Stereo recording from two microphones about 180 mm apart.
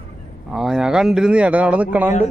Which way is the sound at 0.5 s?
Centre (ahead or behind).